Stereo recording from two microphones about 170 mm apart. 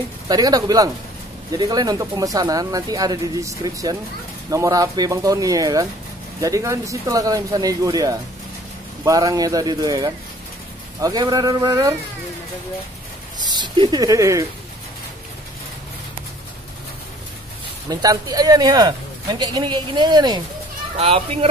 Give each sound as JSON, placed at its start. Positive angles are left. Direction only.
{"t": 0.3, "sound": "speech", "side_deg": -20}
{"t": 13.4, "sound": "speech", "side_deg": -25}
{"t": 17.8, "sound": "speech", "side_deg": -20}
{"t": 21.0, "sound": "speech", "side_deg": -35}